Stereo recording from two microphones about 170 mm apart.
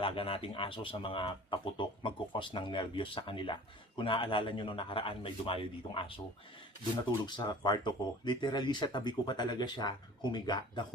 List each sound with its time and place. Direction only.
0.0 s speech: 30° left (ahead or behind)
7.3 s speech: 25° left (ahead or behind)